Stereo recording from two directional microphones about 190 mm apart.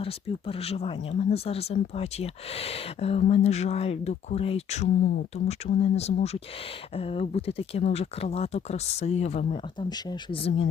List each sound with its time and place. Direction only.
0.0 s speech: 30° left (ahead or behind)